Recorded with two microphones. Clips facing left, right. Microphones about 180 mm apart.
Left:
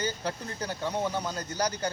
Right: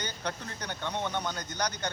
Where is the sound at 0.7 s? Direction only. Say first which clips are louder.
Left 3 dB; 5° left (ahead or behind).